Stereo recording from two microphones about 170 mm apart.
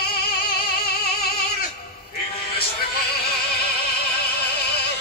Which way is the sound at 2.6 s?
65° left (ahead or behind).